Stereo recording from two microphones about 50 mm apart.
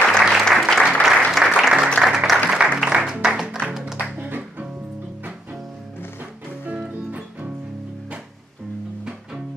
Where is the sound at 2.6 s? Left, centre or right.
Centre.